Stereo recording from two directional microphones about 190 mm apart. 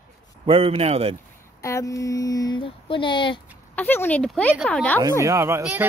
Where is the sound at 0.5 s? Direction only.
30° right (ahead or behind).